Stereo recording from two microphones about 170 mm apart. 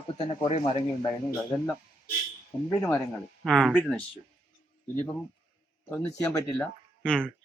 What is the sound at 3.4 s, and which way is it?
Speech, centre (ahead or behind).